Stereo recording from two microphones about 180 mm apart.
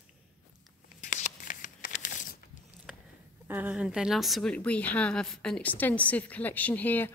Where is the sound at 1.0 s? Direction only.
45° left (ahead or behind).